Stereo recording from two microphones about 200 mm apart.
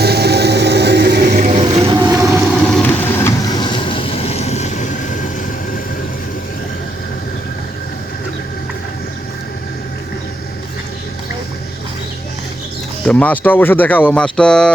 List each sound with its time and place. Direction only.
0.0 s music: 55° right (ahead or behind)
1.4 s a sound: 35° right (ahead or behind)
1.6 s vehicle: 25° right (ahead or behind)
2.6 s vehicle: 5° left (ahead or behind); by 5.3 s 40° left (ahead or behind)
13.1 s speech: 5° left (ahead or behind)